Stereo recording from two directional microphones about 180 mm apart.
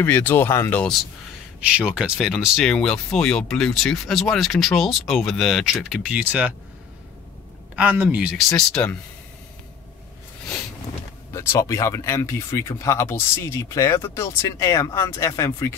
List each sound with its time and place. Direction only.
0.0 s speech: 10° left (ahead or behind)
1.7 s speech: 5° right (ahead or behind)
7.7 s speech: 10° right (ahead or behind)
8.5 s speech: 5° left (ahead or behind)
11.3 s speech: 15° left (ahead or behind)